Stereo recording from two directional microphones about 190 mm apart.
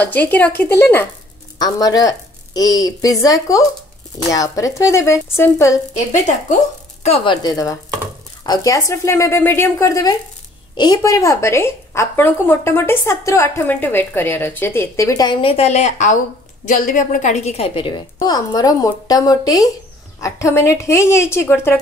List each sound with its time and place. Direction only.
0.0 s a woman's voice: 10° left (ahead or behind)
5.9 s speech: 40° left (ahead or behind)
7.4 s a woman's voice: 15° left (ahead or behind)